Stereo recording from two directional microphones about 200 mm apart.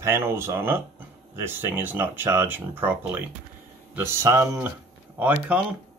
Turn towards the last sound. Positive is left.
turn(degrees=-5)  # may be behind; listen again after turning